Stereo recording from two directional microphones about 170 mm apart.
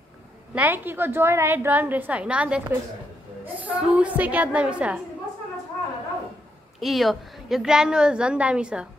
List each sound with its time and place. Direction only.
0.6 s a woman's voice: 10° right (ahead or behind)
6.8 s a woman's voice: centre (ahead or behind)